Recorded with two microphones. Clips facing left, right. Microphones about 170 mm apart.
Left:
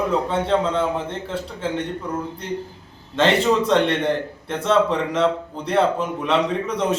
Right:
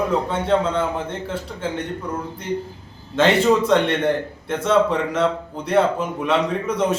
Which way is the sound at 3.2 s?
5° right (ahead or behind).